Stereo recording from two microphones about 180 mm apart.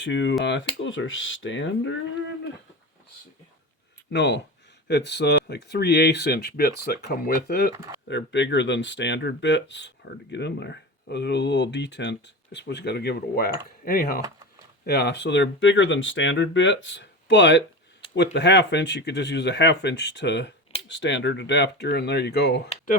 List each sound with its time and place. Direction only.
0.0 s speech: 80° left
4.1 s speech: 75° left (ahead or behind)
8.0 s speech: 80° left
10.3 s speech: 70° left (ahead or behind); by 14.2 s 55° left (ahead or behind)
14.2 s speech: 20° right (ahead or behind)
14.8 s speech: 70° left (ahead or behind)
20.8 s speech: 90° left; by 22.6 s 70° left (ahead or behind)